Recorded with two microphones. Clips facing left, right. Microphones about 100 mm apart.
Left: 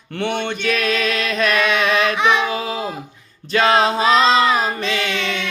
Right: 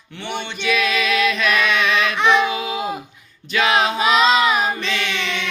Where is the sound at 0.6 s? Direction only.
40° left (ahead or behind).